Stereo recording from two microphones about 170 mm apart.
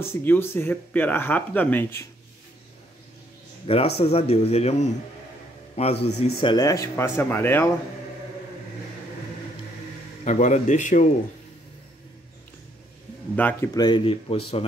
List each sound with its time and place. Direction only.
0.0 s speech: 15° left (ahead or behind)
3.6 s a man's voice: 35° left (ahead or behind)
6.0 s a man's voice: 40° left (ahead or behind)
6.4 s speech: 25° left (ahead or behind)
10.2 s speech: 45° left (ahead or behind)
13.4 s speech: 10° left (ahead or behind)
13.7 s a man's voice: 25° left (ahead or behind)